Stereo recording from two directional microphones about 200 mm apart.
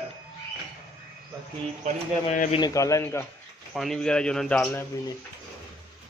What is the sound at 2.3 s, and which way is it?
Speech, 35° left (ahead or behind).